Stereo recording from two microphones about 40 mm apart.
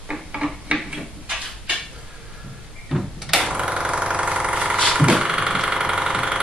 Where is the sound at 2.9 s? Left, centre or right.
Centre.